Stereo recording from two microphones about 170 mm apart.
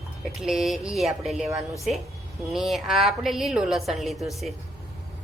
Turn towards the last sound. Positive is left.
turn(degrees=0)  # may be behind; listen again after turning